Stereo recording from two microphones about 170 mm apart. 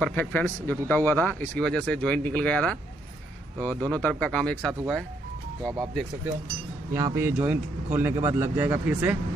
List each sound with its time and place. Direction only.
0.0 s speech: 10° left (ahead or behind)
3.9 s speech: 5° left (ahead or behind)
6.9 s a sound: 25° right (ahead or behind)
7.2 s speech: 15° right (ahead or behind)